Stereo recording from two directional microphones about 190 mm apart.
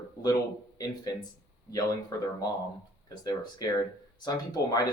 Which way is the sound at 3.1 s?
20° left (ahead or behind).